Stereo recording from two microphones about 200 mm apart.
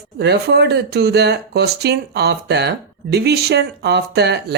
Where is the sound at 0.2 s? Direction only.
55° right (ahead or behind).